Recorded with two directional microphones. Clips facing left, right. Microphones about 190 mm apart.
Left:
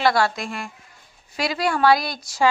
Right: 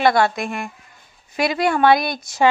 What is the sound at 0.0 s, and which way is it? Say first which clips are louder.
A woman's voice: right 3 dB; 20° right (ahead or behind).